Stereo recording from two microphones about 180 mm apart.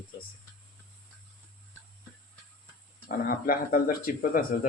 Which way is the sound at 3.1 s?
55° left (ahead or behind).